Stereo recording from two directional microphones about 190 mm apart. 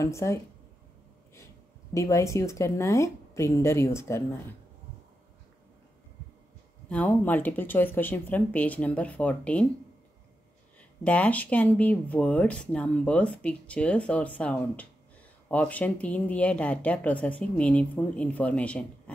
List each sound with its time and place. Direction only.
0.0 s speech: 15° left (ahead or behind)
2.0 s speech: 15° left (ahead or behind)
6.9 s speech: 10° left (ahead or behind)
10.8 s speech: 5° left (ahead or behind)